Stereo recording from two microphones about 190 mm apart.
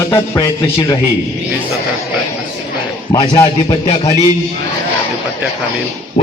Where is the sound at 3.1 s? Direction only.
20° left (ahead or behind).